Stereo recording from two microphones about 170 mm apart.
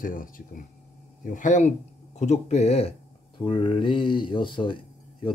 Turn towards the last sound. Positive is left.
turn(degrees=30)  # may be behind; listen again after turning